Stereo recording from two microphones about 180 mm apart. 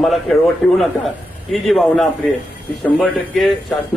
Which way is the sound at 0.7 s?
Centre (ahead or behind).